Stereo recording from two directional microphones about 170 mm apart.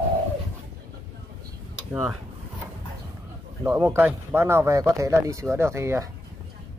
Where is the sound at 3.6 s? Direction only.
15° right (ahead or behind).